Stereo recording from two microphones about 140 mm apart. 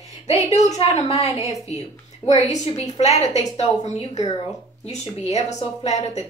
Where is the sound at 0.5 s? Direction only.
55° left (ahead or behind).